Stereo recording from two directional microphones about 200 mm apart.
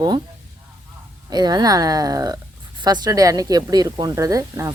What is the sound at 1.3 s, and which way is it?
Speech, 20° right (ahead or behind).